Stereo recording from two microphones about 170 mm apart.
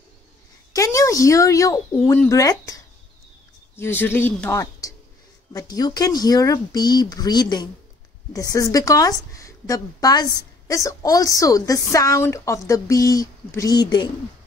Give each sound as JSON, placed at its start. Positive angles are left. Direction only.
{"t": 0.7, "sound": "a woman's voice", "side_deg": 20}